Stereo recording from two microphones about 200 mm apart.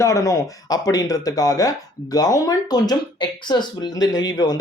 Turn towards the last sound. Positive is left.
turn(degrees=20)  # may be behind; listen again after turning